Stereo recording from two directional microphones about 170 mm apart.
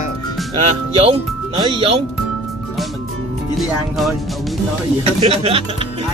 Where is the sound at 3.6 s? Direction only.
Centre (ahead or behind).